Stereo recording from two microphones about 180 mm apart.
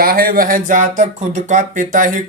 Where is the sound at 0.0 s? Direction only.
55° right (ahead or behind).